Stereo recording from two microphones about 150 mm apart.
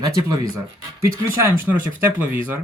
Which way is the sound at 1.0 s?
15° right (ahead or behind).